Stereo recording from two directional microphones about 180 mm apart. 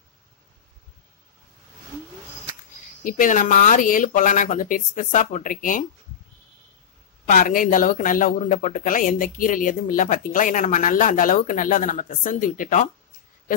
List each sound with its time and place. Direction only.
3.0 s speech: 50° left (ahead or behind)
7.2 s speech: 45° left (ahead or behind)